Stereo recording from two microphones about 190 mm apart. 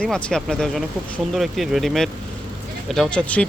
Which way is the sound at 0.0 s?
5° left (ahead or behind).